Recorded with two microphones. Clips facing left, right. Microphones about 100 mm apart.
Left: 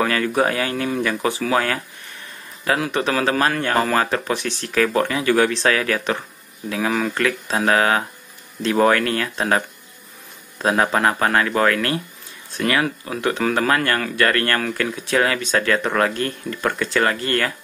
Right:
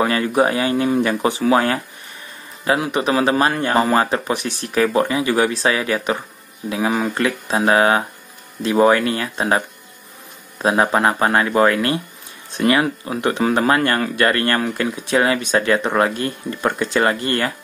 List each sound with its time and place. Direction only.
0.0 s speech: 20° right (ahead or behind)
6.9 s speech: 25° right (ahead or behind)